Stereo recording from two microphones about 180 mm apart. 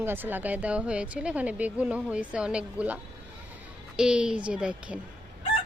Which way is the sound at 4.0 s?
5° right (ahead or behind).